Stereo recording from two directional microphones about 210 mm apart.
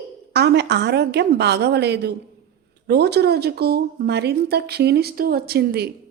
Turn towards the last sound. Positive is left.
turn(degrees=-50)  # may be behind; listen again after turning